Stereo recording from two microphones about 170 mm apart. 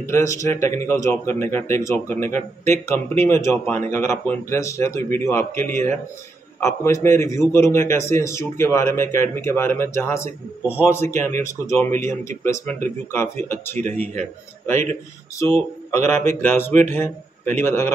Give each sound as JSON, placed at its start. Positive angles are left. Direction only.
{"t": 0.0, "sound": "speech", "side_deg": 15}
{"t": 15.3, "sound": "speech", "side_deg": 15}